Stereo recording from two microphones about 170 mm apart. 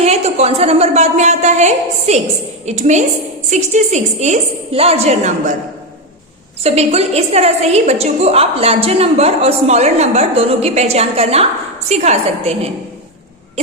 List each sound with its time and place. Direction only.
0.0 s a woman's voice: 40° right (ahead or behind)
6.6 s a woman's voice: 40° right (ahead or behind)